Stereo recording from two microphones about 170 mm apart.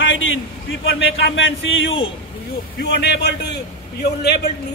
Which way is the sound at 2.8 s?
75° left (ahead or behind).